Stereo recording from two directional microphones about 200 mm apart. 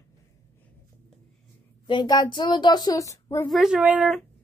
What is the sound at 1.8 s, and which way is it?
Speech, 25° left (ahead or behind).